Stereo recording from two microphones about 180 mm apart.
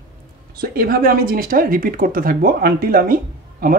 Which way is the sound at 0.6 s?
55° right (ahead or behind).